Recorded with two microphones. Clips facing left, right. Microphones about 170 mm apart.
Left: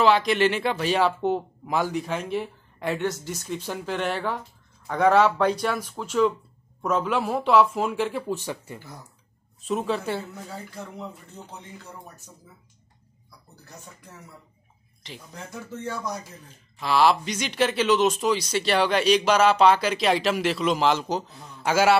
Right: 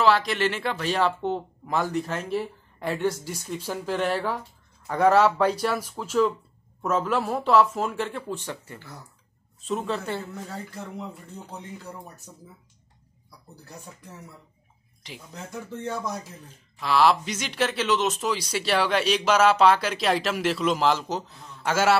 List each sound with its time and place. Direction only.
0.0 s speech: centre (ahead or behind)
0.5 s speech: 10° left (ahead or behind)
15.9 s speech: 25° right (ahead or behind)
16.8 s speech: centre (ahead or behind)